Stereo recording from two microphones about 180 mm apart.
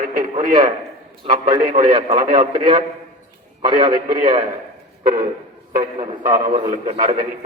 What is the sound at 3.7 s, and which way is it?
Speech, 25° right (ahead or behind).